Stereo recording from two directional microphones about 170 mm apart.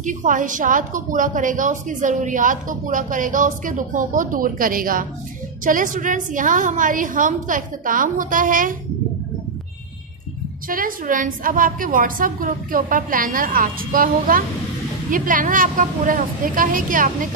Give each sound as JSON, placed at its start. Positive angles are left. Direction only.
{"t": 0.0, "sound": "a woman's voice", "side_deg": -50}
{"t": 10.7, "sound": "a woman's voice", "side_deg": -55}